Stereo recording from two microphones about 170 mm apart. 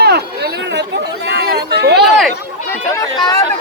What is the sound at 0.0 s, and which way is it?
Chatter, 70° right (ahead or behind).